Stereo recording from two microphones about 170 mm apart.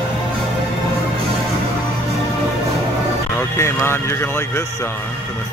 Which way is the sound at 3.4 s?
15° left (ahead or behind).